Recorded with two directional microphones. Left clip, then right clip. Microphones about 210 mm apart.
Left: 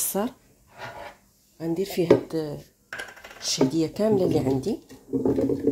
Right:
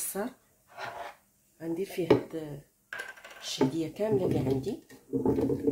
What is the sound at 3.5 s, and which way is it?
Speech, 40° left (ahead or behind).